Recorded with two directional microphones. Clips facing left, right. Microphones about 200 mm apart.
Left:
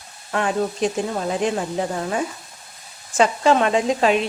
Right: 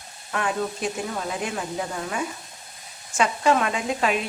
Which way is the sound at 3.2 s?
30° left (ahead or behind).